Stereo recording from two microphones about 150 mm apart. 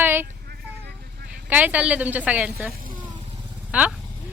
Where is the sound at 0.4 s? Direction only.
90° right.